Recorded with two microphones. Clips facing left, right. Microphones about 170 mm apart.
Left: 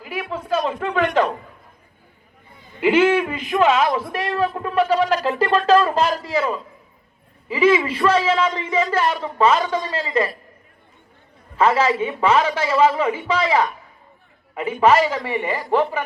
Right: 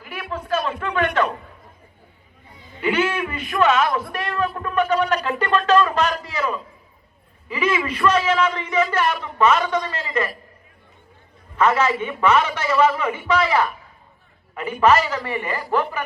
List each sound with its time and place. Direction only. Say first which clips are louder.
0.3 s a sound: left 1 dB; 25° left (ahead or behind)
2.8 s a man's voice: left 6 dB; 30° left (ahead or behind)
11.5 s a man's voice: left 1 dB; 30° left (ahead or behind)